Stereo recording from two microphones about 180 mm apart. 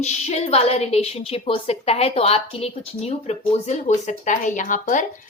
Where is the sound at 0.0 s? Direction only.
40° left (ahead or behind).